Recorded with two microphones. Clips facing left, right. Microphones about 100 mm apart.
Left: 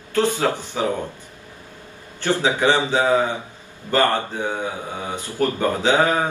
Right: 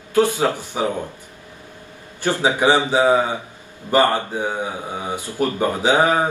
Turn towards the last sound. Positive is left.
turn(degrees=-15)  # may be behind; listen again after turning